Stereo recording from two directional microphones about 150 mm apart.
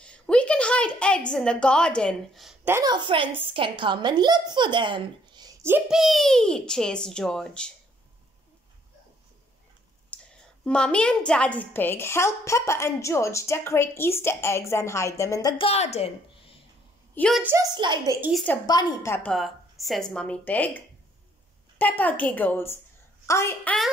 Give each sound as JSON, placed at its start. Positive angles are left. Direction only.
{"t": 0.0, "sound": "a sound", "side_deg": 5}
{"t": 1.3, "sound": "a child's voice", "side_deg": 5}
{"t": 2.6, "sound": "a woman's voice", "side_deg": -15}
{"t": 2.9, "sound": "a woman's voice", "side_deg": -35}
{"t": 5.9, "sound": "a child's voice", "side_deg": 0}
{"t": 10.1, "sound": "a woman's voice", "side_deg": 5}
{"t": 15.5, "sound": "a woman's voice", "side_deg": 40}
{"t": 17.4, "sound": "a woman's voice", "side_deg": -15}
{"t": 17.6, "sound": "a woman's voice", "side_deg": -30}
{"t": 18.3, "sound": "a woman's voice", "side_deg": 5}
{"t": 18.7, "sound": "a woman's voice", "side_deg": 25}
{"t": 19.1, "sound": "a woman's voice", "side_deg": 5}